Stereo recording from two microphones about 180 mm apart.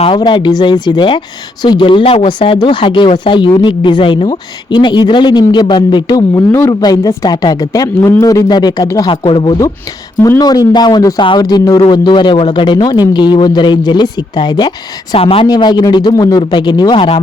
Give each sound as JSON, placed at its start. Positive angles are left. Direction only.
{"t": 0.0, "sound": "speech", "side_deg": 30}